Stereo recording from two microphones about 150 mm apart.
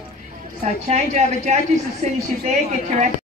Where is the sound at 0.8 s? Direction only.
50° right (ahead or behind).